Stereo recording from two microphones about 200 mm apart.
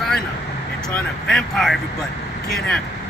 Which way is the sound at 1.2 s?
Centre (ahead or behind).